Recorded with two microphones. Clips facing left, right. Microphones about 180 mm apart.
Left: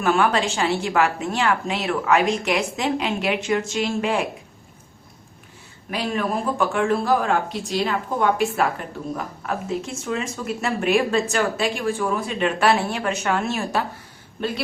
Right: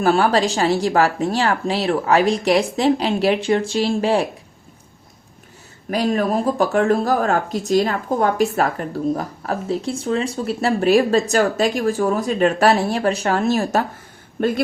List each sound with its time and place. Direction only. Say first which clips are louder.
0.0 s speech: right 4 dB; 35° right (ahead or behind)
5.9 s speech: right 5 dB; 40° right (ahead or behind)